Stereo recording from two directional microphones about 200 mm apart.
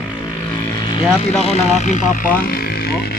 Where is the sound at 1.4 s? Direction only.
30° left (ahead or behind).